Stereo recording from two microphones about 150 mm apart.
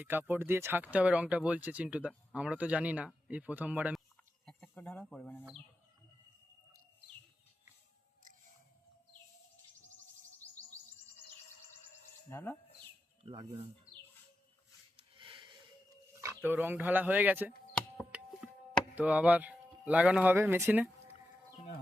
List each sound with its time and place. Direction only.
0.0 s speech: 15° right (ahead or behind)
4.4 s speech: 5° left (ahead or behind)
12.3 s speech: 15° left (ahead or behind)
13.2 s speech: 40° right (ahead or behind)
13.9 s bird: 75° left (ahead or behind)
14.9 s a sound: 35° right (ahead or behind)
16.2 s speech: 15° right (ahead or behind)
18.4 s a sound: 5° right (ahead or behind)
18.9 s speech: 10° right (ahead or behind)